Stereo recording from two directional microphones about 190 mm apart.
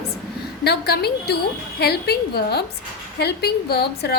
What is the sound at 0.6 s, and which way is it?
A woman's voice, 55° left (ahead or behind).